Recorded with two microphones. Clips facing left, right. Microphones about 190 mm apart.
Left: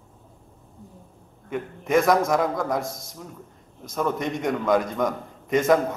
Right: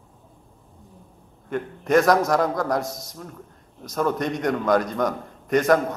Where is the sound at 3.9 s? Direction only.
5° left (ahead or behind).